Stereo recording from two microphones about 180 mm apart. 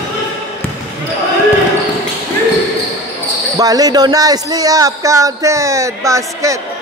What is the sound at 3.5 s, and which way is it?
Speech, 20° right (ahead or behind).